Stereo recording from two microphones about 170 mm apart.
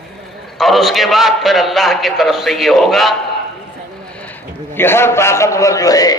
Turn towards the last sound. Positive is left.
turn(degrees=20)  # may be behind; listen again after turning